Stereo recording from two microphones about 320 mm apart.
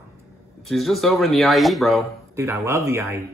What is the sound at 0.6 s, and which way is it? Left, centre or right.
Speech, centre.